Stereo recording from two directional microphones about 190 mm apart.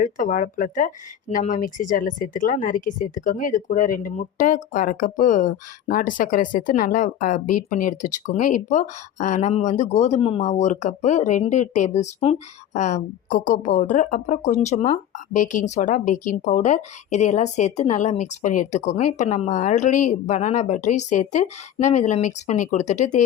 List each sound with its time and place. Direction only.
0.0 s speech: 45° left (ahead or behind)